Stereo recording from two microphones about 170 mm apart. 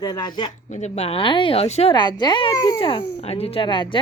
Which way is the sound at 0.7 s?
40° left (ahead or behind).